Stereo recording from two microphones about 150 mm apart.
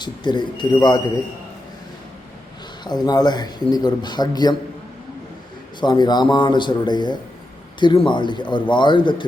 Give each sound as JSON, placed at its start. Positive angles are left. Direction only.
{"t": 0.0, "sound": "a man's voice", "side_deg": 30}
{"t": 2.8, "sound": "a man's voice", "side_deg": 25}
{"t": 5.8, "sound": "a man's voice", "side_deg": 30}